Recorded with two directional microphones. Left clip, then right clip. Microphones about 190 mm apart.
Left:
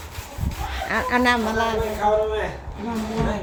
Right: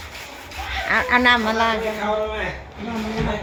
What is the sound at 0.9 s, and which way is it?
Speech, 10° left (ahead or behind).